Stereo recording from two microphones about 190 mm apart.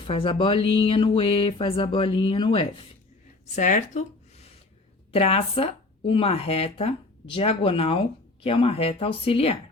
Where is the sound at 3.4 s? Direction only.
40° left (ahead or behind).